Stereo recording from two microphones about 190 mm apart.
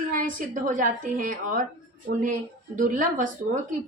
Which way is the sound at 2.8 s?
45° right (ahead or behind).